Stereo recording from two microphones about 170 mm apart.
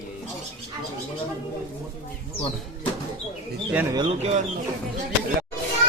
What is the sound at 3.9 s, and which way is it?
Speech, 35° right (ahead or behind).